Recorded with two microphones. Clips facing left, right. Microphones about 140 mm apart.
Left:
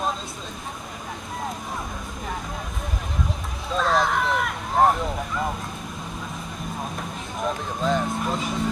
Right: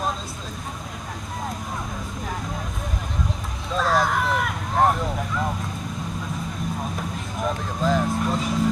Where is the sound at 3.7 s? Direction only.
Centre (ahead or behind).